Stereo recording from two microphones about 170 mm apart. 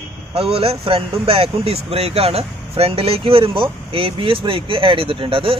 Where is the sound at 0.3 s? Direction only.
35° right (ahead or behind).